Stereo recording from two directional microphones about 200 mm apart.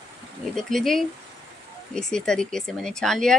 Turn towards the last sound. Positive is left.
turn(degrees=0)  # may be behind; listen again after turning